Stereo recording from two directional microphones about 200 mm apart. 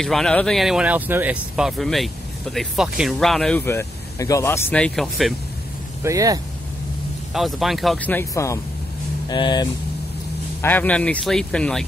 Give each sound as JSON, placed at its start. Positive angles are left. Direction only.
{"t": 0.0, "sound": "speech", "side_deg": 5}
{"t": 6.0, "sound": "speech", "side_deg": -15}
{"t": 7.3, "sound": "speech", "side_deg": 0}
{"t": 10.6, "sound": "speech", "side_deg": 10}